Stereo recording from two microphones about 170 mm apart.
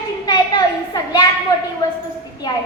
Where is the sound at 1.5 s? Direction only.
20° left (ahead or behind).